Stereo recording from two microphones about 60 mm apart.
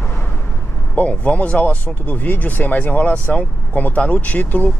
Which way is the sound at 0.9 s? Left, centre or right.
Left.